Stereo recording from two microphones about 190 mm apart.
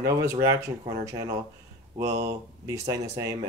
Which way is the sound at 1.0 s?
15° right (ahead or behind).